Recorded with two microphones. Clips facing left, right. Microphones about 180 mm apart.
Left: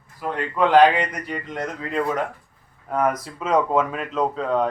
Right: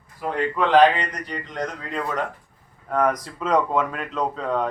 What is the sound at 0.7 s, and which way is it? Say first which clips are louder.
A man's voice: left 1 dB; 10° left (ahead or behind).